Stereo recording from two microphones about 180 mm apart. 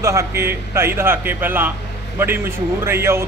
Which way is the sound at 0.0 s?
15° right (ahead or behind).